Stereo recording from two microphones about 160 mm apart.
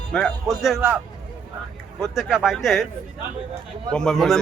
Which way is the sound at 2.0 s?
5° right (ahead or behind).